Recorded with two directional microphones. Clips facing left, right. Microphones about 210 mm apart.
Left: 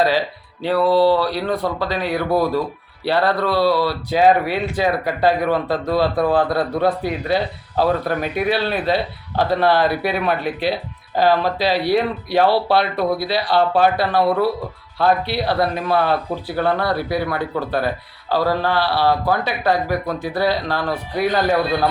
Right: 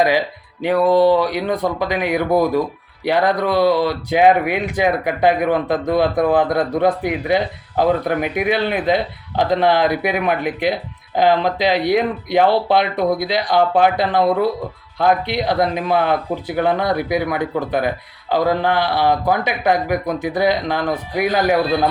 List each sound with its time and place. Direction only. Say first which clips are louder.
0.0 s speech: right 1 dB; 15° right (ahead or behind)